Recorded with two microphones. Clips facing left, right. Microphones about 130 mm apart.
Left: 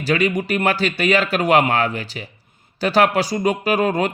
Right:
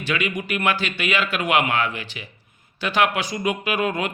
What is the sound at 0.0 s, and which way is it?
Speech, 35° left (ahead or behind).